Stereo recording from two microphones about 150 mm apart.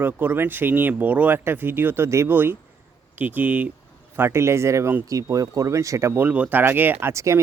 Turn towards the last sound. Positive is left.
turn(degrees=-20)  # may be behind; listen again after turning